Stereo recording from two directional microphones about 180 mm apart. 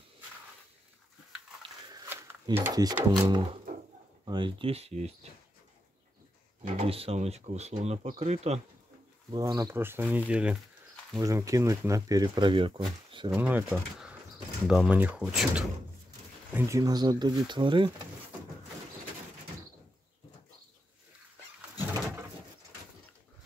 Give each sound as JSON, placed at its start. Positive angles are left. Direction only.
{"t": 1.6, "sound": "biting", "side_deg": -20}
{"t": 2.5, "sound": "speech", "side_deg": -15}
{"t": 6.6, "sound": "speech", "side_deg": -35}
{"t": 9.3, "sound": "speech", "side_deg": -20}
{"t": 11.1, "sound": "speech", "side_deg": -20}
{"t": 13.3, "sound": "speech", "side_deg": -10}
{"t": 16.5, "sound": "speech", "side_deg": -15}